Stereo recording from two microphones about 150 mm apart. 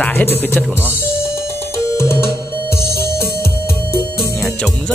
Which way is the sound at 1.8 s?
20° left (ahead or behind).